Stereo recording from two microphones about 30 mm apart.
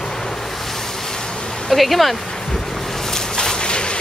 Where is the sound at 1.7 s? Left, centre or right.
Centre.